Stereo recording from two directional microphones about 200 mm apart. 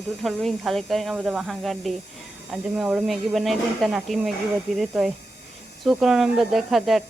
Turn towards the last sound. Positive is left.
turn(degrees=0)  # may be behind; listen again after turning